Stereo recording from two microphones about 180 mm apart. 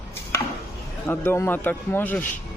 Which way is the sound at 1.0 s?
15° left (ahead or behind).